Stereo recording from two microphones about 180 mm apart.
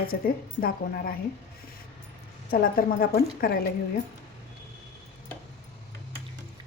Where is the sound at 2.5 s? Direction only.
55° left (ahead or behind).